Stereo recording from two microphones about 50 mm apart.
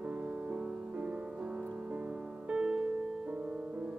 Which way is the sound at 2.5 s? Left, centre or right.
Right.